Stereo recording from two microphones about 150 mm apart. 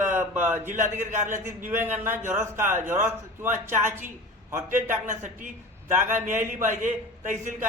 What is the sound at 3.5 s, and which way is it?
A man's voice, 55° right (ahead or behind).